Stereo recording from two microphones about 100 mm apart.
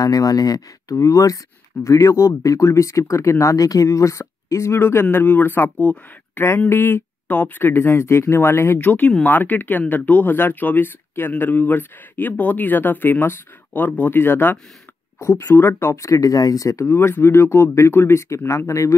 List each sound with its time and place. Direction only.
0.0 s speech: 35° left (ahead or behind)